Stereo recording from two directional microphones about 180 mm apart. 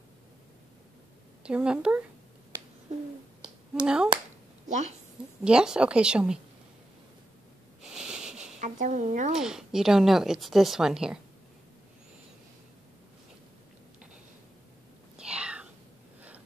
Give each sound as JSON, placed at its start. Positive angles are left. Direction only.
{"t": 1.4, "sound": "a woman's voice", "side_deg": -5}
{"t": 3.8, "sound": "a woman's voice", "side_deg": -5}
{"t": 4.6, "sound": "a woman's voice", "side_deg": -40}
{"t": 5.4, "sound": "a woman's voice", "side_deg": -5}
{"t": 7.9, "sound": "wheeze", "side_deg": -5}
{"t": 8.5, "sound": "a woman's voice", "side_deg": -45}
{"t": 9.3, "sound": "a woman's voice", "side_deg": -5}
{"t": 15.1, "sound": "whispering", "side_deg": -5}